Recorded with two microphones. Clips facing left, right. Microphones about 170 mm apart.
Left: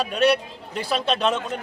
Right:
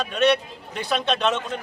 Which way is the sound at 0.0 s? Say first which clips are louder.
Even; 10° left (ahead or behind).